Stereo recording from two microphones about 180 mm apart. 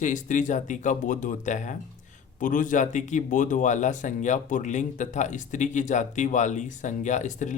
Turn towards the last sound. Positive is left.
turn(degrees=45)  # may be behind; listen again after turning